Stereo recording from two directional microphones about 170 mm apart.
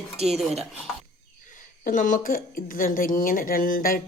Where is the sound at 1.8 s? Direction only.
50° left (ahead or behind).